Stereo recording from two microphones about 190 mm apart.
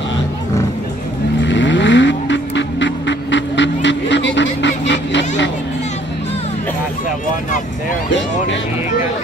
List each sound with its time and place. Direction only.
1.4 s vehicle: 70° left (ahead or behind)